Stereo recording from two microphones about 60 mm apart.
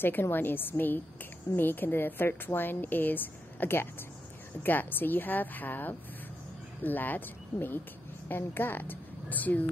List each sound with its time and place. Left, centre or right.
0.0 s a woman's voice: left